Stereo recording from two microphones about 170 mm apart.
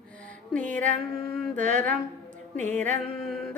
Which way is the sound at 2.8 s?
5° left (ahead or behind).